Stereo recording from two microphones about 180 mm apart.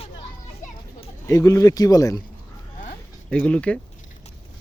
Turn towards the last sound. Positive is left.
turn(degrees=5)  # may be behind; listen again after turning